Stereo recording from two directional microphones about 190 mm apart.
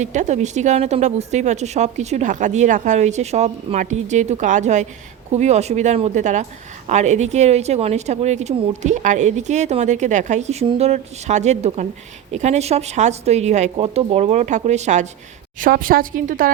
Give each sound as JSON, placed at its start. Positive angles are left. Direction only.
{"t": 0.0, "sound": "a woman's voice", "side_deg": -40}